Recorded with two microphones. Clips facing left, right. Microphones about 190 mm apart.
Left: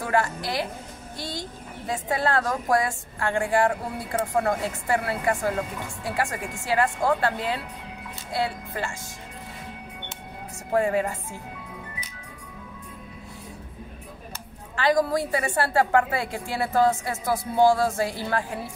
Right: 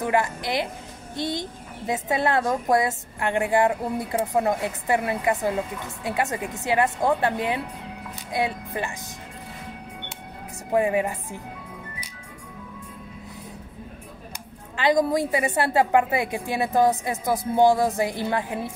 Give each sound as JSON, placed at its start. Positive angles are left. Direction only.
{"t": 0.0, "sound": "a woman's voice", "side_deg": -20}
{"t": 10.7, "sound": "speech", "side_deg": -15}
{"t": 14.8, "sound": "a woman's voice", "side_deg": -20}